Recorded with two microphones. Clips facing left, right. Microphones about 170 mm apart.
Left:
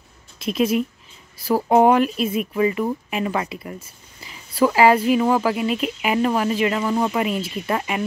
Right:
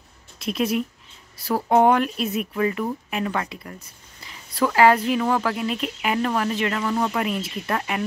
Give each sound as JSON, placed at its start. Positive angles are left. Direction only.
{"t": 0.4, "sound": "speech", "side_deg": 0}